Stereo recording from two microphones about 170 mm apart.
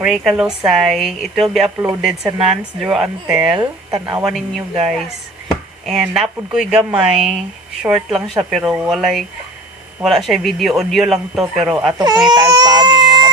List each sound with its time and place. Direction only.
0.0 s speech: centre (ahead or behind)
11.9 s speech: 25° right (ahead or behind)
12.3 s baby cry: 25° right (ahead or behind)